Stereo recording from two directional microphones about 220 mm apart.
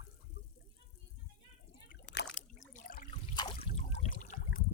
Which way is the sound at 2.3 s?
35° left (ahead or behind).